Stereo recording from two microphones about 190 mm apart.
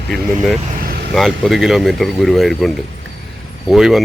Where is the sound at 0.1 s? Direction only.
Centre (ahead or behind).